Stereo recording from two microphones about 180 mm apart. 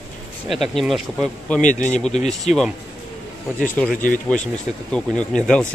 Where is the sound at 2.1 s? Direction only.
40° left (ahead or behind).